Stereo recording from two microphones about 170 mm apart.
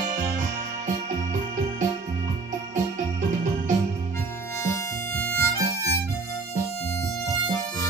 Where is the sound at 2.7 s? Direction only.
50° right (ahead or behind).